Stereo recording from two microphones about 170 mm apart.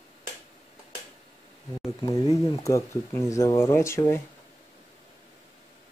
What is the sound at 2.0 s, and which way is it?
Speech, 20° left (ahead or behind).